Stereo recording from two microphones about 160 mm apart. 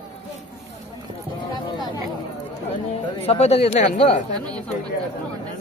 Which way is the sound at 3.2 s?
40° left (ahead or behind).